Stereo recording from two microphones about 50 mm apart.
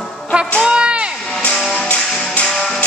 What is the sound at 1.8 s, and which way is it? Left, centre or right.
Music, left.